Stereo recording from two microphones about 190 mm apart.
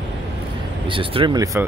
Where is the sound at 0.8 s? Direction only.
25° right (ahead or behind).